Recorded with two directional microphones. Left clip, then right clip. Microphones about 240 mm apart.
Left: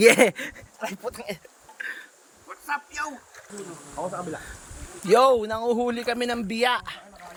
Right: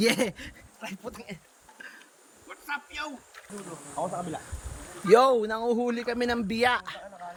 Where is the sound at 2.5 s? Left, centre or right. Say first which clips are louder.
Left 5 dB; left.